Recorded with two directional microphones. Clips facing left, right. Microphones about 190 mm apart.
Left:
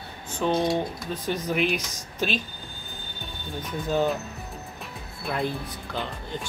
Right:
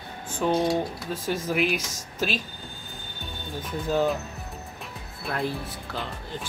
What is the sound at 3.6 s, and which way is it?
Speech, centre (ahead or behind).